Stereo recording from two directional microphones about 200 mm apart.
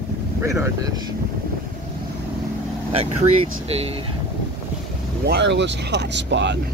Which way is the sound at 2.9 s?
30° right (ahead or behind).